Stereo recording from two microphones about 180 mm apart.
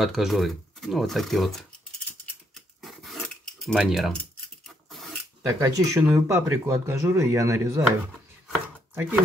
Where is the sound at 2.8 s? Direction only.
Centre (ahead or behind).